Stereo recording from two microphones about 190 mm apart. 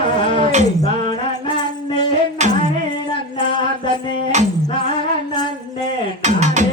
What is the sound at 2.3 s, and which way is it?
Music, 40° right (ahead or behind).